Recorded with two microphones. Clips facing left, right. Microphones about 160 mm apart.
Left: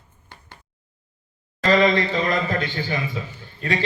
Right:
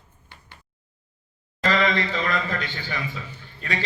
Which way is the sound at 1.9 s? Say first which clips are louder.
Left 4 dB; 35° left (ahead or behind).